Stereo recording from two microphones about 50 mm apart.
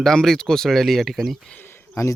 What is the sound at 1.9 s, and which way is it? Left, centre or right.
Speech, left.